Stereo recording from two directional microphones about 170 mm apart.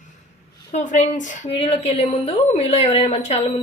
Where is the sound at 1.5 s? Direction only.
35° left (ahead or behind).